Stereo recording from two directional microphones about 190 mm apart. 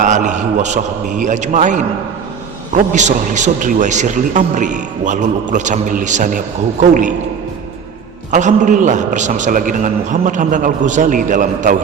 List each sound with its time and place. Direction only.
0.0 s a man's voice: 40° right (ahead or behind)
8.3 s a man's voice: 40° right (ahead or behind)